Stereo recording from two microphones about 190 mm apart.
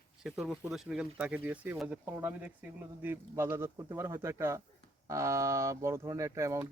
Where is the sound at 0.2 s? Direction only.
Centre (ahead or behind).